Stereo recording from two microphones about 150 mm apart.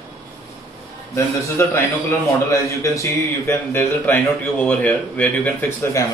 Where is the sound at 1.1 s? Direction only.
20° left (ahead or behind).